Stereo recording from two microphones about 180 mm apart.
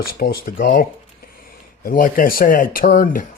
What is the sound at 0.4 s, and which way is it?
Speech, 50° left (ahead or behind).